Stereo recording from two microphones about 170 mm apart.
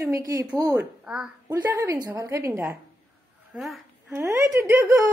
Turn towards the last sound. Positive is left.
turn(degrees=-20)  # may be behind; listen again after turning